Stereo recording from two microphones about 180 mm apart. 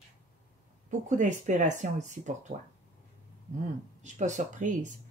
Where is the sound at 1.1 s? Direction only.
45° right (ahead or behind).